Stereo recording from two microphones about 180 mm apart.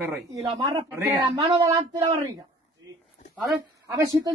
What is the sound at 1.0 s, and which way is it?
Speech, 20° right (ahead or behind).